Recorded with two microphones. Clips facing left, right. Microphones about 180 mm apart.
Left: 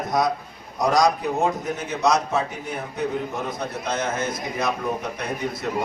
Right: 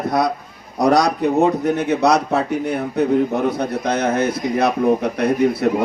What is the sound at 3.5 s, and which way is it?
A man's voice, 65° right (ahead or behind).